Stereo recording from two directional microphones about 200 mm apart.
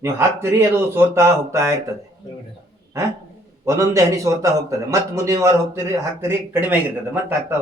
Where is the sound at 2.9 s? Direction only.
15° right (ahead or behind).